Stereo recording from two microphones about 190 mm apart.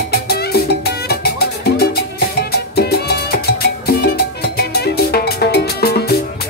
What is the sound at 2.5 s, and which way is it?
Salsa music, 55° left (ahead or behind).